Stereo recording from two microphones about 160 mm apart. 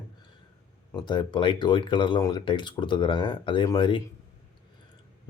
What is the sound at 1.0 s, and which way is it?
Speech, 30° left (ahead or behind).